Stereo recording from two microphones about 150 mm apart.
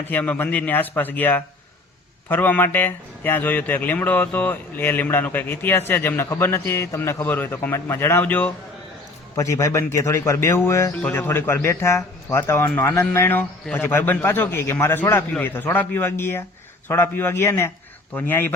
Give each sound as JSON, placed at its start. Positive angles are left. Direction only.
{"t": 0.1, "sound": "a man's voice", "side_deg": 10}